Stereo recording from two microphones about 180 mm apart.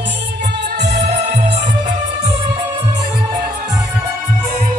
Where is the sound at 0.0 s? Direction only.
75° right (ahead or behind).